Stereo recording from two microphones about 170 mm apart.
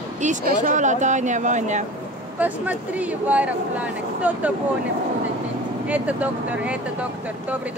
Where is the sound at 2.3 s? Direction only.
10° right (ahead or behind).